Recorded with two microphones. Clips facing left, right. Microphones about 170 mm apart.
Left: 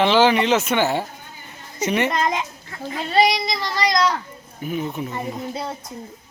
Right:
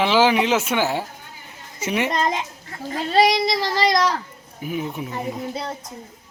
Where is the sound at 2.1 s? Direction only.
30° right (ahead or behind).